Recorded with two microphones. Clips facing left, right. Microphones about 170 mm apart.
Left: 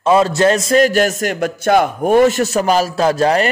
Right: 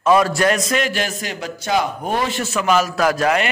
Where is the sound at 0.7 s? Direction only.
40° left (ahead or behind).